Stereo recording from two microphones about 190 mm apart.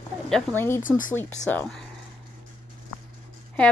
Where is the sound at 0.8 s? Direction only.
45° left (ahead or behind).